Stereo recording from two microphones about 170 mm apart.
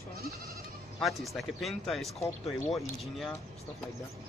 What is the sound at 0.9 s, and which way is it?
Speech, centre (ahead or behind).